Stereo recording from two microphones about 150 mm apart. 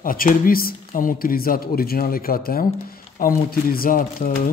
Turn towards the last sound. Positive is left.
turn(degrees=70)  # may be behind; listen again after turning